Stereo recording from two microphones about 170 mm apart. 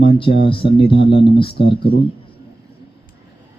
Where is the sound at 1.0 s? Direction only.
90° left.